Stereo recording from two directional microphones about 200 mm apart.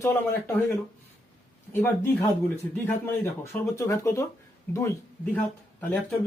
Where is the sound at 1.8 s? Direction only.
10° left (ahead or behind).